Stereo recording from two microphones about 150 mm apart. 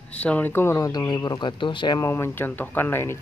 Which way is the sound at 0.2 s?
10° left (ahead or behind).